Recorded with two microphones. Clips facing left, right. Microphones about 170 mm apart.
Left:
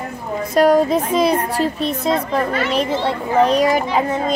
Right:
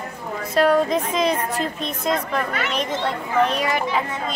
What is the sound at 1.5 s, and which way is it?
A woman's voice, 35° left (ahead or behind).